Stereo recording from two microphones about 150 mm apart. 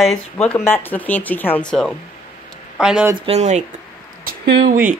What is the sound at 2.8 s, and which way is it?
Speech, 5° right (ahead or behind).